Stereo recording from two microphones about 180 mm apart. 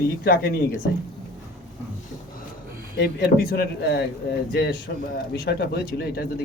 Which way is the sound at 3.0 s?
65° left (ahead or behind).